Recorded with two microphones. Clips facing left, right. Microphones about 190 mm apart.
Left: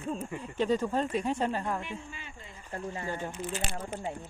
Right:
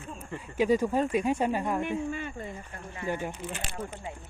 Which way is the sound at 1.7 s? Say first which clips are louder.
Right 9 dB; 55° right (ahead or behind).